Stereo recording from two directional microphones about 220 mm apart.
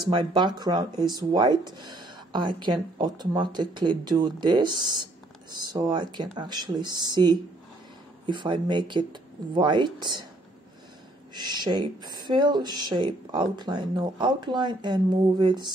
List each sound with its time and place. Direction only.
0.1 s speech: 20° right (ahead or behind)
11.3 s speech: 20° right (ahead or behind)